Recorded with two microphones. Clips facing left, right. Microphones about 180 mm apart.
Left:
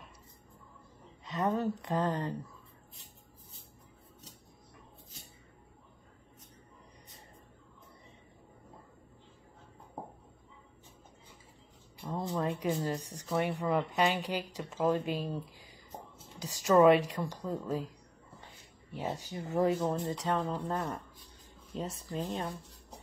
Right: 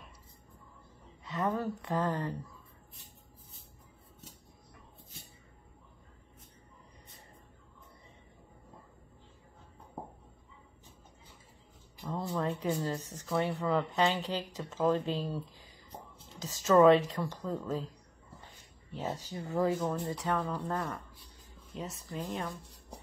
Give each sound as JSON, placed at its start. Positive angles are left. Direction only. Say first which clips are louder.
{"t": 1.2, "sound": "speech", "louder": "left 2 dB", "side_deg": 20}
{"t": 12.1, "sound": "a sound", "louder": "even", "side_deg": 15}
{"t": 13.0, "sound": "speech", "louder": "even", "side_deg": 15}
{"t": 18.9, "sound": "a woman's voice", "louder": "even", "side_deg": 15}